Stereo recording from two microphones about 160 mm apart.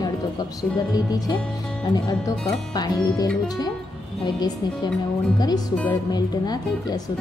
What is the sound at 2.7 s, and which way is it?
Speech, 25° left (ahead or behind).